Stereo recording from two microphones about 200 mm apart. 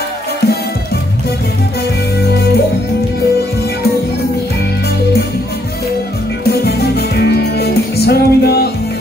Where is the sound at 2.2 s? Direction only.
55° left (ahead or behind).